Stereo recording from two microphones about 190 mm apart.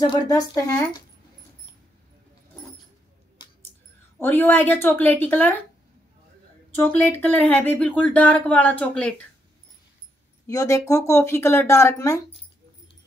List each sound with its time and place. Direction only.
0.0 s speech: 20° left (ahead or behind)
4.2 s speech: 10° left (ahead or behind)
6.7 s speech: 10° left (ahead or behind)
10.4 s speech: 15° left (ahead or behind)